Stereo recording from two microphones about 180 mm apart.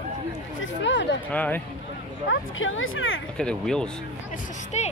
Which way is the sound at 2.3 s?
90° left.